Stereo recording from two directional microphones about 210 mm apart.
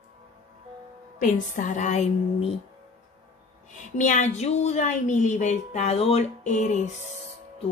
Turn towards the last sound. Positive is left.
turn(degrees=35)  # may be behind; listen again after turning